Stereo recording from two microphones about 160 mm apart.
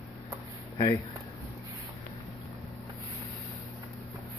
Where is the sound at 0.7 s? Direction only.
25° left (ahead or behind).